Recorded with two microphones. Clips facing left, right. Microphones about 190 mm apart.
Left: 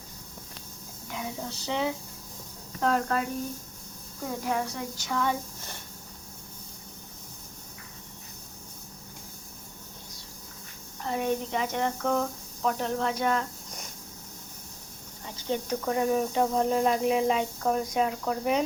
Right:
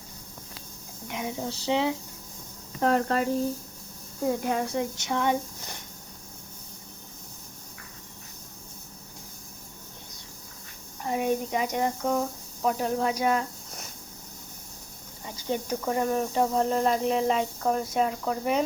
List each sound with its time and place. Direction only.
1.1 s speech: 25° right (ahead or behind)
4.4 s speech: 25° right (ahead or behind)
11.0 s speech: 10° right (ahead or behind)
15.4 s speech: 5° right (ahead or behind)